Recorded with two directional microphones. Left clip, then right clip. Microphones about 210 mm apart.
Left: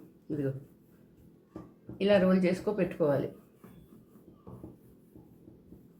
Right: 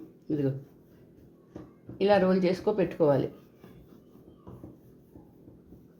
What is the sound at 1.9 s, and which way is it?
Speech, 20° right (ahead or behind).